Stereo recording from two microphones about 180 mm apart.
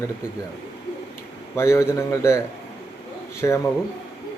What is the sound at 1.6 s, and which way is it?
A man's voice, 15° left (ahead or behind).